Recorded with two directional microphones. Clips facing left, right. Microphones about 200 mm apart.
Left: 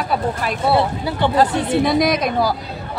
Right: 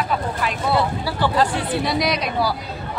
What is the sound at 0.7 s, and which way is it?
Speech, 20° left (ahead or behind).